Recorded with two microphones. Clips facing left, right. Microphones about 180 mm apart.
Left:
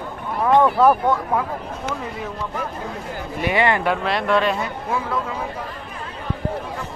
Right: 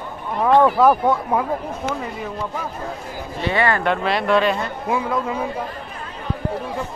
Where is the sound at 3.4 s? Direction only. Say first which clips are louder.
Left 1 dB; 15° left (ahead or behind).